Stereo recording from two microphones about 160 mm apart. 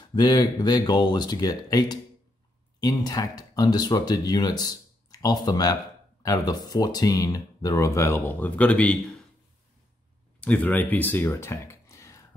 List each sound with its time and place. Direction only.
0.1 s speech: 25° left (ahead or behind); by 8.9 s 10° left (ahead or behind)
10.4 s speech: 10° left (ahead or behind)